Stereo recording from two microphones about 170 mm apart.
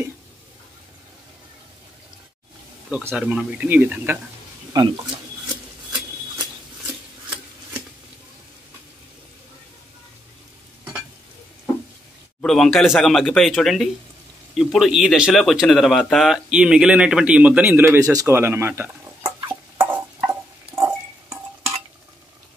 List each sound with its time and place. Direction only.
2.9 s speech: 10° right (ahead or behind)
4.7 s speech: 20° right (ahead or behind)
12.4 s speech: 5° left (ahead or behind); by 21.7 s 15° right (ahead or behind)